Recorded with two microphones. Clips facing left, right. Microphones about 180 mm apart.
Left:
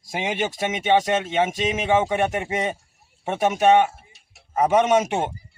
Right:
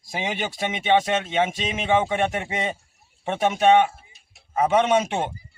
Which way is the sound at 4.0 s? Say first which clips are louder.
Left 2 dB; 75° left (ahead or behind).